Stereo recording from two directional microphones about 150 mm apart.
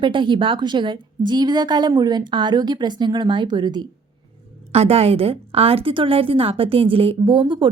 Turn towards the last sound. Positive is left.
turn(degrees=-30)  # may be behind; listen again after turning